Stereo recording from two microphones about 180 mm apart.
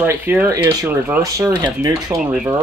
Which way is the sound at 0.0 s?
10° right (ahead or behind).